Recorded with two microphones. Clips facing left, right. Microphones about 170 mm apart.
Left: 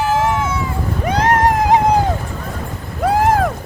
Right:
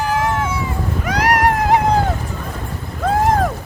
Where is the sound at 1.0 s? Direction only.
25° left (ahead or behind).